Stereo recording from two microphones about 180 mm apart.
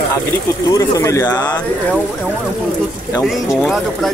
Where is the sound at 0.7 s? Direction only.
20° left (ahead or behind).